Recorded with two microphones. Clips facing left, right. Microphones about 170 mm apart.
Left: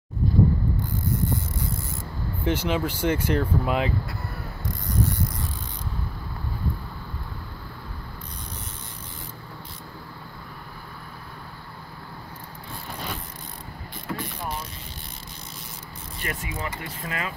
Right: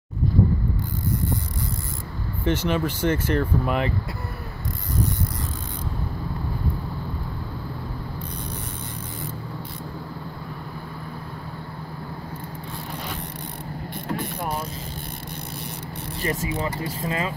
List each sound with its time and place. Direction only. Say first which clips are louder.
2.4 s speech: right 2 dB; 10° left (ahead or behind)
14.0 s mechanisms: right 3 dB; 55° right (ahead or behind)
16.2 s speech: right 6 dB; 30° right (ahead or behind)